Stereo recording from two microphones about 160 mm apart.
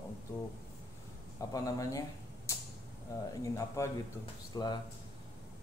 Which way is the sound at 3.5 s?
20° left (ahead or behind).